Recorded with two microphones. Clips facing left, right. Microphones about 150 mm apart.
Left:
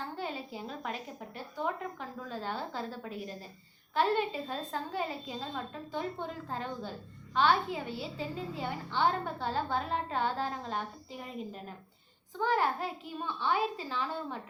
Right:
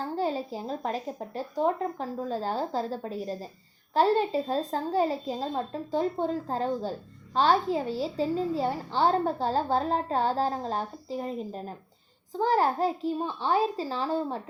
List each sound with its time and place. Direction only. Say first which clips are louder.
0.0 s a woman's voice: right 9 dB; 35° right (ahead or behind)